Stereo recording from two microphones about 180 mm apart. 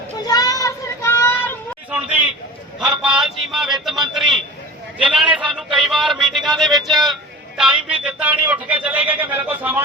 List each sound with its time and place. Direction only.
0.3 s child singing: 20° left (ahead or behind)
1.9 s a sound: 10° right (ahead or behind)
6.6 s speech: centre (ahead or behind)